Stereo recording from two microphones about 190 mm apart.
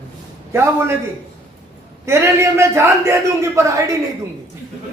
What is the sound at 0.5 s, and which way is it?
Speech, 15° right (ahead or behind).